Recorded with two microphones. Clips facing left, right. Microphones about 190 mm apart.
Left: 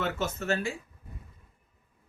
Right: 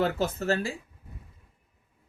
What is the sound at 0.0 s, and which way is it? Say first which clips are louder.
Speech: right 5 dB; 35° right (ahead or behind).